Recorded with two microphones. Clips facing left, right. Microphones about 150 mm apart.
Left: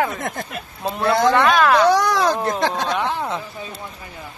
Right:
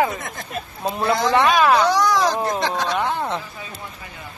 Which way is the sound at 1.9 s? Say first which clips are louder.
Left 2 dB; 60° left (ahead or behind).